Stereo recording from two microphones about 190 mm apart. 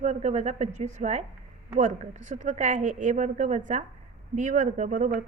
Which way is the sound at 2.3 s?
40° right (ahead or behind).